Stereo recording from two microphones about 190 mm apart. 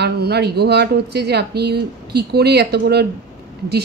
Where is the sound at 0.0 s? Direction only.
60° right (ahead or behind).